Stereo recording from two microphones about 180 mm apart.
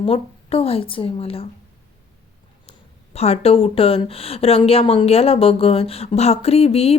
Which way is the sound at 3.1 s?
35° left (ahead or behind).